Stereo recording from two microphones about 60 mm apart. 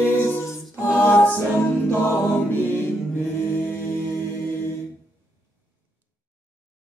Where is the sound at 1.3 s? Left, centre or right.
Left.